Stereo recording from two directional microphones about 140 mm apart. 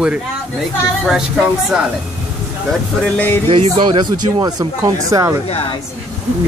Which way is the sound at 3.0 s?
10° left (ahead or behind).